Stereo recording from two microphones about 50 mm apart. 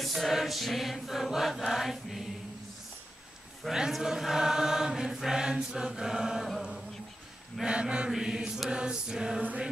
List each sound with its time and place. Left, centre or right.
0.0 s chant: centre
3.9 s chant: centre
7.6 s mantra: centre
8.1 s chant: centre